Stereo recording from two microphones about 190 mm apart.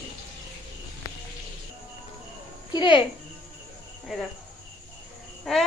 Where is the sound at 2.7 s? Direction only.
25° left (ahead or behind).